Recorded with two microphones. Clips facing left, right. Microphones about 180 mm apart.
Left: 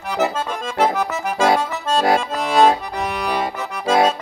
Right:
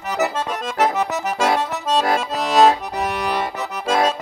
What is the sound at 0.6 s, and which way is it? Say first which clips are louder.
Accordion: left 1 dB; 5° right (ahead or behind).